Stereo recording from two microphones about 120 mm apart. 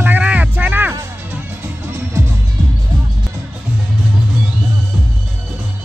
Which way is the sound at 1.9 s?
20° right (ahead or behind).